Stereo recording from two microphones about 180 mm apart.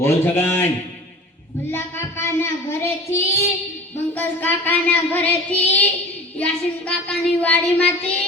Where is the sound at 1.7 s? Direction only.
15° left (ahead or behind).